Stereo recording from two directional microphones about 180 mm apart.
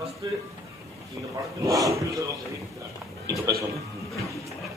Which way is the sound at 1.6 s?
20° right (ahead or behind).